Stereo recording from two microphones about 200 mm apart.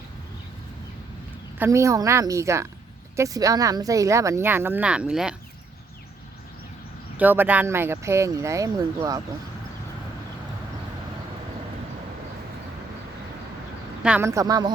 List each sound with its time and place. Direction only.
1.5 s speech: 15° right (ahead or behind)
7.2 s speech: 10° right (ahead or behind)
14.0 s speech: 10° right (ahead or behind)